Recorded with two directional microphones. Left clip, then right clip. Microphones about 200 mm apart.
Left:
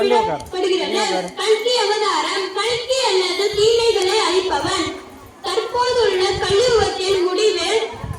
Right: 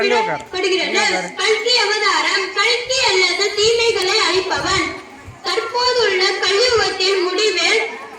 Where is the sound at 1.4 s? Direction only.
35° left (ahead or behind).